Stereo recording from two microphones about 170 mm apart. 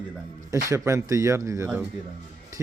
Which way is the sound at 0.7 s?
15° right (ahead or behind).